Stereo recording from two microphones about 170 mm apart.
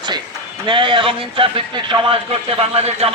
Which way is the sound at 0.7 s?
30° right (ahead or behind).